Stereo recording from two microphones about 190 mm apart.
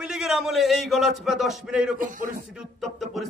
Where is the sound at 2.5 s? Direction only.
Centre (ahead or behind).